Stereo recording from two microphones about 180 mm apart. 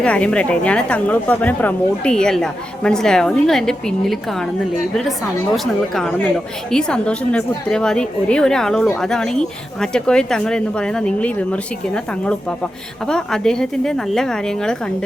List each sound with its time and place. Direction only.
0.0 s a woman's voice: 5° left (ahead or behind)
5.5 s a woman's voice: centre (ahead or behind)